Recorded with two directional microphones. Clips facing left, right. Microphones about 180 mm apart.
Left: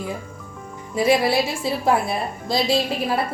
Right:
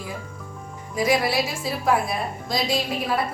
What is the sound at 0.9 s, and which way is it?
A woman's voice, 30° left (ahead or behind).